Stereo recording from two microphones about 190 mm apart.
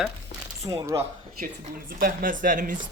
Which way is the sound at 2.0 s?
45° right (ahead or behind).